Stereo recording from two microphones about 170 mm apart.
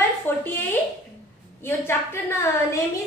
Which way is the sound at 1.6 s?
15° left (ahead or behind).